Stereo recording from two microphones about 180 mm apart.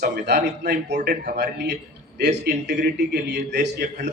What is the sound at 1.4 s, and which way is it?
A man's voice, 70° right (ahead or behind).